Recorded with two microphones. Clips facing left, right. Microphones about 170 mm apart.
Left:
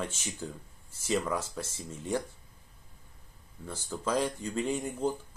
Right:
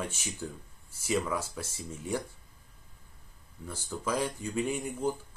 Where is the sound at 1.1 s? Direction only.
10° right (ahead or behind).